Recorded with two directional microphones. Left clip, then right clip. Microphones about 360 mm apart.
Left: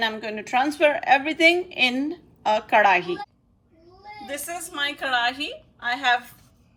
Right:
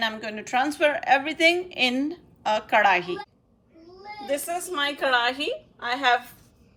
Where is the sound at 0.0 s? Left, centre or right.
Centre.